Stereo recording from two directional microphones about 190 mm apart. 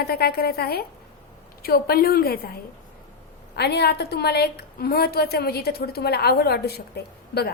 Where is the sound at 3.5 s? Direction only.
60° left (ahead or behind).